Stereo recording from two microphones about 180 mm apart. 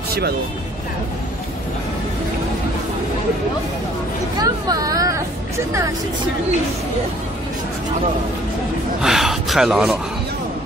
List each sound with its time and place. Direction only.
4.4 s speech: 20° right (ahead or behind)
9.0 s speech: centre (ahead or behind)